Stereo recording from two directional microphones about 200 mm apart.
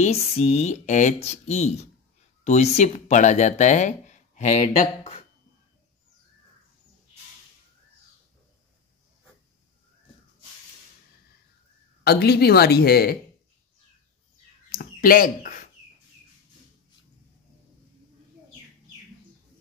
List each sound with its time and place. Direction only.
0.0 s speech: 30° left (ahead or behind)
12.0 s a woman's voice: 55° left (ahead or behind)
14.7 s bird: 45° left (ahead or behind)